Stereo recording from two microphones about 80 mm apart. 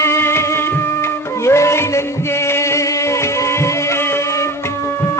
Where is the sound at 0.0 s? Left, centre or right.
Left.